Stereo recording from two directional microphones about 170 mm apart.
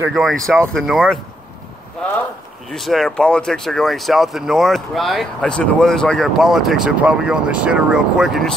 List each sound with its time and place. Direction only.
0.1 s speech: centre (ahead or behind)
2.0 s a sound: 5° left (ahead or behind)
2.7 s speech: centre (ahead or behind)